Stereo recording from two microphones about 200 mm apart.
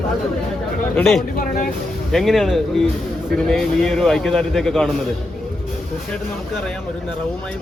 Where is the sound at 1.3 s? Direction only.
45° left (ahead or behind).